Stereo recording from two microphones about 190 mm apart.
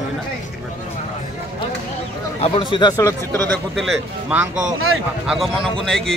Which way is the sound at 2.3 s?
30° left (ahead or behind).